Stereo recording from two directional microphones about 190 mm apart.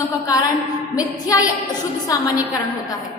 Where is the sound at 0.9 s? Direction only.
20° left (ahead or behind).